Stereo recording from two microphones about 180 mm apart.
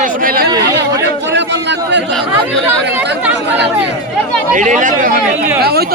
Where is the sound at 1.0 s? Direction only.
75° right (ahead or behind).